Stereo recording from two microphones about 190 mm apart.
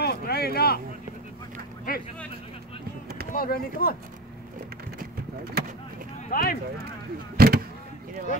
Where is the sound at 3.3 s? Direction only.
50° left (ahead or behind).